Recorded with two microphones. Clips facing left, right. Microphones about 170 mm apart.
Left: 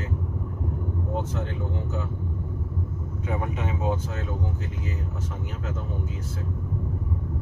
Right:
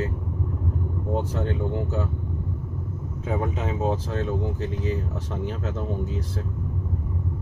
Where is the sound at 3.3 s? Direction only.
35° right (ahead or behind).